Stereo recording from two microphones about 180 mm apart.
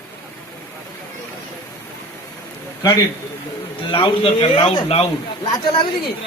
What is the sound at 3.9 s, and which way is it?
Speech, 30° left (ahead or behind).